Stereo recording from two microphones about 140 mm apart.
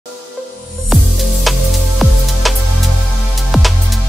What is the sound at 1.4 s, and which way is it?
Music, centre (ahead or behind).